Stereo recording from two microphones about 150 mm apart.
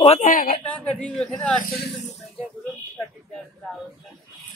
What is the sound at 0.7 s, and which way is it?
Speech, 10° left (ahead or behind).